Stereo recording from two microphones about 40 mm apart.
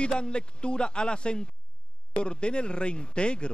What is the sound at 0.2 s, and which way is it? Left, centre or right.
Speech, left.